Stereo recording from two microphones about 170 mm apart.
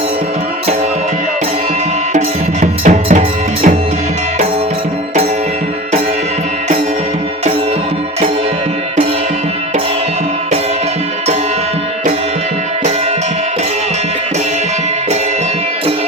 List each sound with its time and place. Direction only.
2.1 s music: 45° right (ahead or behind)